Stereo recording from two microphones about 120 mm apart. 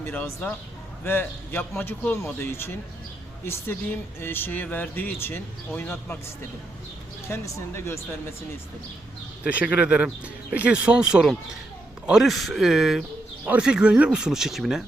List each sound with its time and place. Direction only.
0.0 s a man's voice: 10° left (ahead or behind)
9.4 s speech: 10° right (ahead or behind)